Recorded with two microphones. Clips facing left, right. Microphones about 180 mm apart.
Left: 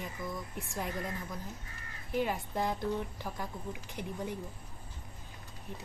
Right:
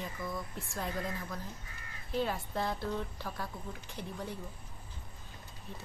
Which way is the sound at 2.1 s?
15° left (ahead or behind).